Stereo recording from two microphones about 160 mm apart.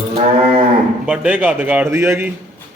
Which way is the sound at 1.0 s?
5° right (ahead or behind).